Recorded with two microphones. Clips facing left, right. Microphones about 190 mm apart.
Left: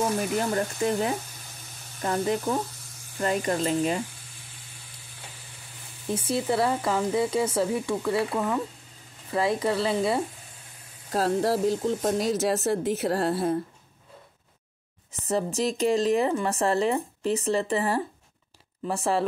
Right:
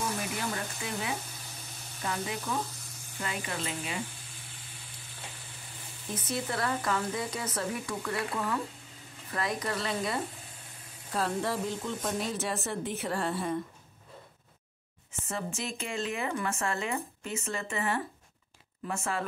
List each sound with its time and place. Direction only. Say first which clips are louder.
0.4 s speech: left 10 dB; 45° left (ahead or behind)
6.1 s speech: left 8 dB; 30° left (ahead or behind)
11.1 s speech: left 7 dB; 40° left (ahead or behind)
15.1 s speech: left 10 dB; 35° left (ahead or behind)